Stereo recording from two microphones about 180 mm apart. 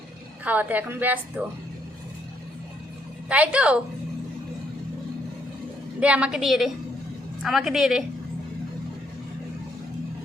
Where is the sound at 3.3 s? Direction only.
5° right (ahead or behind).